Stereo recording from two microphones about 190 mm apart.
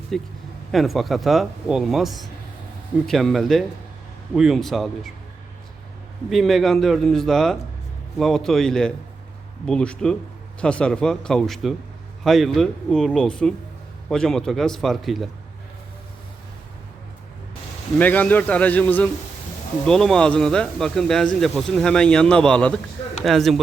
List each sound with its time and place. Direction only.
0.1 s speech: centre (ahead or behind)
6.3 s speech: centre (ahead or behind)
18.0 s a man's voice: 10° left (ahead or behind)